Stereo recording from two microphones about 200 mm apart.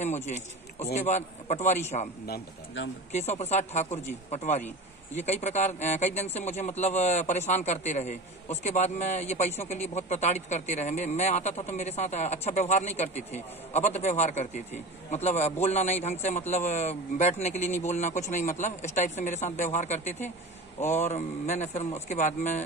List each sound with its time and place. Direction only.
0.0 s a sound: 35° left (ahead or behind)
0.9 s a man's voice: 35° left (ahead or behind)
2.2 s speech: 55° left (ahead or behind)
3.1 s a man's voice: 35° left (ahead or behind)